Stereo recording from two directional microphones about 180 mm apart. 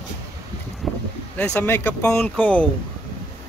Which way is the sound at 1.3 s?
10° left (ahead or behind).